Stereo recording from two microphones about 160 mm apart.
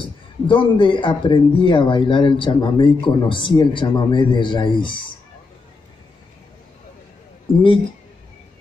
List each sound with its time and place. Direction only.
0.0 s speech: 30° left (ahead or behind)